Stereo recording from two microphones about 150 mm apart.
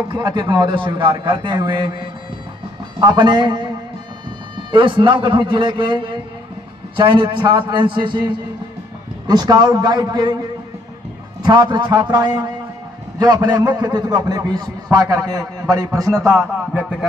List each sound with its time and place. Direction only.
0.1 s a man's voice: 30° right (ahead or behind)
11.4 s a man's voice: 30° right (ahead or behind)